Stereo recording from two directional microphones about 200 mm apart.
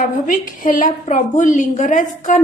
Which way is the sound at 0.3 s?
45° left (ahead or behind).